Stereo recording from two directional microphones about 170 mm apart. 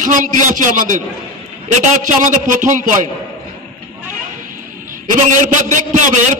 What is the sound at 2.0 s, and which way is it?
A man's voice, 50° right (ahead or behind).